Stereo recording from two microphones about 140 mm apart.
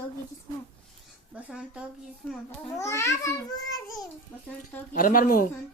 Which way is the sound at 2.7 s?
20° left (ahead or behind).